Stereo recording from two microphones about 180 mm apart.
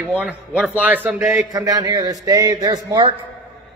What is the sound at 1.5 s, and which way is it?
A man's voice, 20° right (ahead or behind).